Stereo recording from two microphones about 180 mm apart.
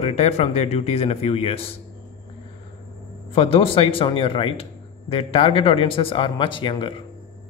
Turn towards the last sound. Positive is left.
turn(degrees=25)  # may be behind; listen again after turning